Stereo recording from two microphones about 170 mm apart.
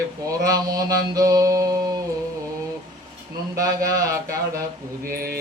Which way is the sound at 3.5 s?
20° right (ahead or behind).